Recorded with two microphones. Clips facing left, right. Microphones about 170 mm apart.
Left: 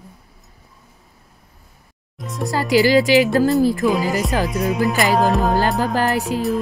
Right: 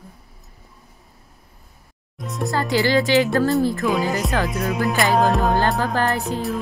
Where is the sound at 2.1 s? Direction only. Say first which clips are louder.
Left 1 dB; centre (ahead or behind).